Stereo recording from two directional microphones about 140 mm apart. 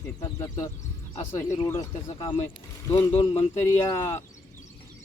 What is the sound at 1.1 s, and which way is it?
Speech, 60° left (ahead or behind).